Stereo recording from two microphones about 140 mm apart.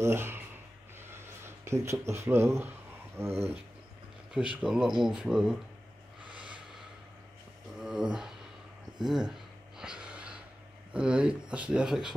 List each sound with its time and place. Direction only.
0.0 s speech: 15° right (ahead or behind)
0.9 s a sound: 15° right (ahead or behind)
3.2 s speech: 20° right (ahead or behind); by 5.6 s 5° right (ahead or behind)
7.8 s a sound: 5° right (ahead or behind)
9.0 s speech: 5° right (ahead or behind)
9.8 s gasp: 5° right (ahead or behind)
10.9 s speech: 5° right (ahead or behind)